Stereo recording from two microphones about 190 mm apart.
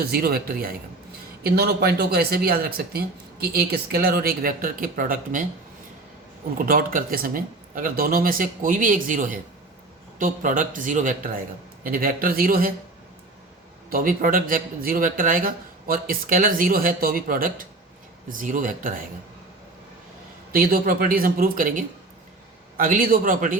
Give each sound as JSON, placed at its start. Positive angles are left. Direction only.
{"t": 0.0, "sound": "speech", "side_deg": -55}
{"t": 6.6, "sound": "speech", "side_deg": -50}
{"t": 13.9, "sound": "speech", "side_deg": -50}
{"t": 20.5, "sound": "speech", "side_deg": -50}